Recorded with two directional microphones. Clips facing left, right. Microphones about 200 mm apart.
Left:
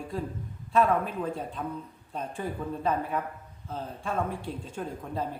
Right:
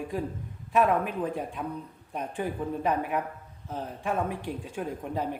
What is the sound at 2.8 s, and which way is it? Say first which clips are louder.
A woman's voice: even; 15° right (ahead or behind).